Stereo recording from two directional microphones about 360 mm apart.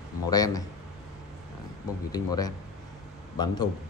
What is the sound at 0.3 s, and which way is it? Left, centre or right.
Speech, centre.